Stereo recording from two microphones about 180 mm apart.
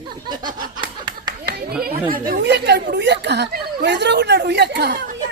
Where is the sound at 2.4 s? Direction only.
70° right (ahead or behind).